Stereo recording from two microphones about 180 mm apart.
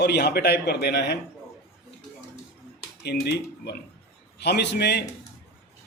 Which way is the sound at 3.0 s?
65° left (ahead or behind).